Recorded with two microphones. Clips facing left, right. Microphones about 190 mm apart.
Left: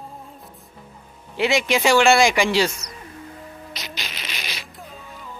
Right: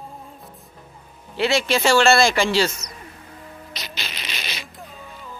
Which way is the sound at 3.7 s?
15° left (ahead or behind).